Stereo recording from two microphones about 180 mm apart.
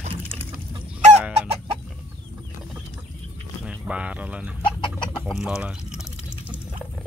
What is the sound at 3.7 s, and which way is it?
Speech, 5° right (ahead or behind).